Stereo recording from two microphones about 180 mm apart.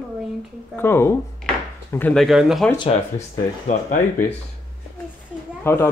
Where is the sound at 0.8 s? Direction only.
15° left (ahead or behind).